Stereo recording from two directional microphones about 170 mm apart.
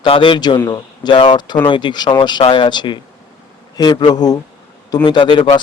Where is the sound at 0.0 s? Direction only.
30° left (ahead or behind).